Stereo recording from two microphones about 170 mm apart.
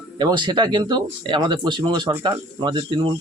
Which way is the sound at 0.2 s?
25° right (ahead or behind).